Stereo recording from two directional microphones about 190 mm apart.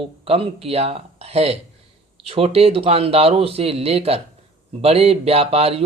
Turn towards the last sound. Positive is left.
turn(degrees=-30)  # may be behind; listen again after turning